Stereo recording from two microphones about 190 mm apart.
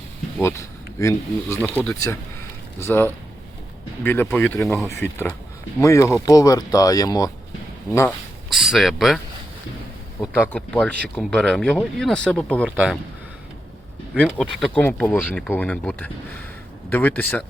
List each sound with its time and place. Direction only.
0.3 s speech: 15° left (ahead or behind)
8.4 s speech: centre (ahead or behind)
10.2 s speech: 15° left (ahead or behind)
10.5 s speech: 5° left (ahead or behind)
14.3 s speech: 5° left (ahead or behind)